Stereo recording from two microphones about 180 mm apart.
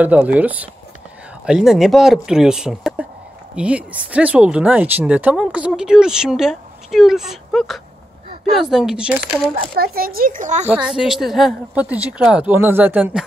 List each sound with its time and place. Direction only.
0.0 s a woman's voice: 10° right (ahead or behind)
9.6 s speech: 55° right (ahead or behind)
10.7 s a woman's voice: 5° right (ahead or behind)